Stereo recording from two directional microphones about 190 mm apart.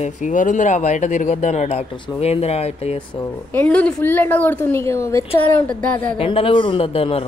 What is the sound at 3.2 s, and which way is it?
A woman's voice, 10° left (ahead or behind).